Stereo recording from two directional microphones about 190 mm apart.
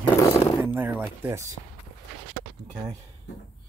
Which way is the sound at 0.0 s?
25° left (ahead or behind).